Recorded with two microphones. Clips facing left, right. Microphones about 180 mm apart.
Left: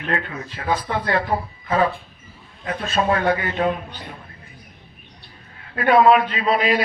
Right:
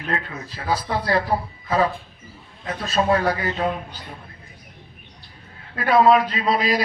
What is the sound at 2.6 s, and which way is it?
Speech, 35° right (ahead or behind).